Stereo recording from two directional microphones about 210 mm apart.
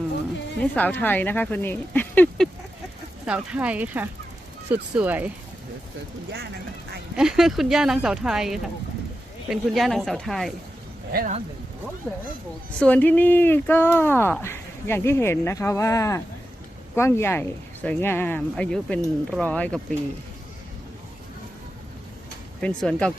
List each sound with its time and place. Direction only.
0.8 s speech: 10° left (ahead or behind)
3.2 s speech: 5° right (ahead or behind)
7.2 s speech: centre (ahead or behind)
11.1 s speech: 45° right (ahead or behind)
12.8 s speech: 5° left (ahead or behind)
22.6 s speech: 5° left (ahead or behind)